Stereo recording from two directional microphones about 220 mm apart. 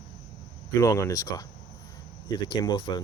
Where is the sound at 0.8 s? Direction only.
15° left (ahead or behind).